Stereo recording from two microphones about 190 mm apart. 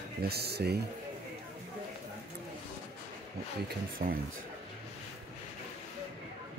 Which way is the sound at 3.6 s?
50° right (ahead or behind).